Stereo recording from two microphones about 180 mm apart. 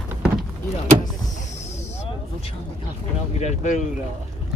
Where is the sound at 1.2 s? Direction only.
40° left (ahead or behind).